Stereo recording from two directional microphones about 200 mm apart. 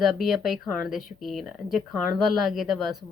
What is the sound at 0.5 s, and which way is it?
Speech, 45° left (ahead or behind).